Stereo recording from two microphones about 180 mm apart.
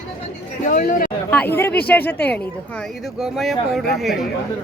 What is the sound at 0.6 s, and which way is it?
Speech, 50° left (ahead or behind).